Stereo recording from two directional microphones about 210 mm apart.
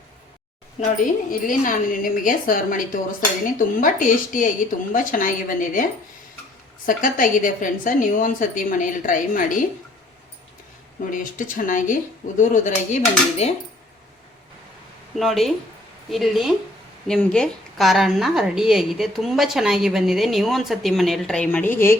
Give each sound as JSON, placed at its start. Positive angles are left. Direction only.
{"t": 0.8, "sound": "a woman's voice", "side_deg": 40}
{"t": 11.0, "sound": "a woman's voice", "side_deg": 40}
{"t": 15.1, "sound": "a woman's voice", "side_deg": 0}